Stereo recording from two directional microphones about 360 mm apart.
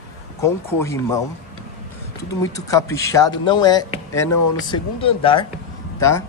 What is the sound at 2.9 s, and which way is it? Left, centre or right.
Speech, centre.